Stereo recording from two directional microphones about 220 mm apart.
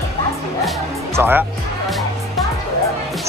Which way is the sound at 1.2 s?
10° right (ahead or behind).